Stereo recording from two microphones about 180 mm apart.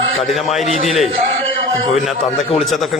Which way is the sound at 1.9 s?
Centre (ahead or behind).